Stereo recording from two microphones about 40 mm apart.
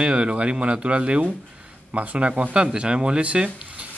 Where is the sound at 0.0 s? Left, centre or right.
Right.